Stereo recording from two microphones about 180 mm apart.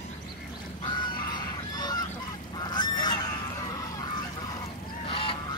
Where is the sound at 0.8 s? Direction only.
25° left (ahead or behind).